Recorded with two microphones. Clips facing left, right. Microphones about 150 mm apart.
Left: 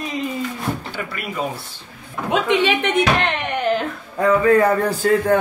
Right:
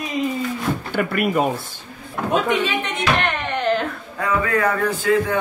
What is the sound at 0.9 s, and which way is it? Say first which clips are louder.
Speech: right 9 dB; 55° right (ahead or behind).